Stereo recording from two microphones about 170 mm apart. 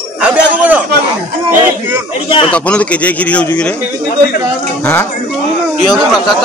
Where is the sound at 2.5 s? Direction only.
5° left (ahead or behind).